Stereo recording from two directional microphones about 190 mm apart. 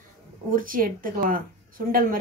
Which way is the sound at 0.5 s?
45° right (ahead or behind).